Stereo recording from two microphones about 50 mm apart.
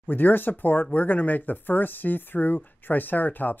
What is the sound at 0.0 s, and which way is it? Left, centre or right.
Speech, left.